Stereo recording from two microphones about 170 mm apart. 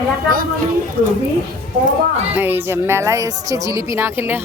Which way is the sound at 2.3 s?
10° right (ahead or behind).